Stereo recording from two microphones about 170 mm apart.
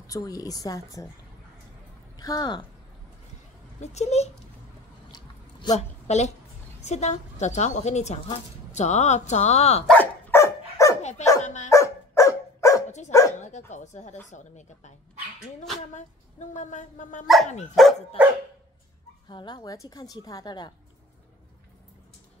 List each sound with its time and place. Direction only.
0.0 s a woman's voice: 20° left (ahead or behind)
2.1 s speech: 25° left (ahead or behind)
3.8 s a woman's voice: 40° left (ahead or behind)
5.1 s a sound: 25° left (ahead or behind)
5.8 s a woman's voice: 40° left (ahead or behind)
9.8 s dog: 10° left (ahead or behind)
11.0 s dog: 40° left (ahead or behind)
11.4 s speech: 45° left (ahead or behind)
11.7 s dog: 15° left (ahead or behind)
13.7 s speech: 45° left (ahead or behind)
15.9 s speech: 45° left (ahead or behind)
17.7 s dog: centre (ahead or behind)
19.2 s a woman's voice: 25° left (ahead or behind)